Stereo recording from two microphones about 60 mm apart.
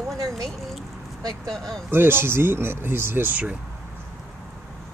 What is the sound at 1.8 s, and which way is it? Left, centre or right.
Speech, right.